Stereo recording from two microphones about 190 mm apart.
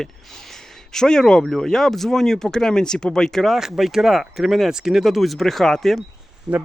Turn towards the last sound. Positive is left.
turn(degrees=-5)  # may be behind; listen again after turning